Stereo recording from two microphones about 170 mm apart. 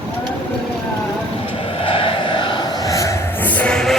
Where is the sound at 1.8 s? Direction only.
30° left (ahead or behind); by 3.9 s 5° left (ahead or behind).